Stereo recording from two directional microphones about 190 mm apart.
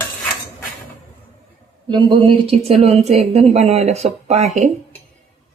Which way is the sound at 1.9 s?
25° right (ahead or behind).